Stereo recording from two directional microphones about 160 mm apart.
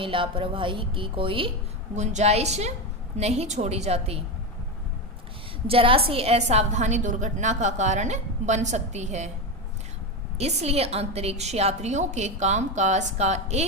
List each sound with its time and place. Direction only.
0.0 s a woman's voice: 35° right (ahead or behind)
2.0 s a woman's voice: 45° right (ahead or behind)
5.6 s a woman's voice: 35° right (ahead or behind)
10.3 s a woman's voice: 40° right (ahead or behind)